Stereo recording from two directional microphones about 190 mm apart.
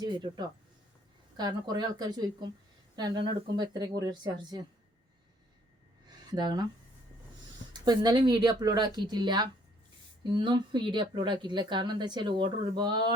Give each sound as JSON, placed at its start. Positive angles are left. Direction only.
{"t": 0.0, "sound": "speech", "side_deg": -25}
{"t": 6.1, "sound": "a sound", "side_deg": -20}
{"t": 7.7, "sound": "speech", "side_deg": -20}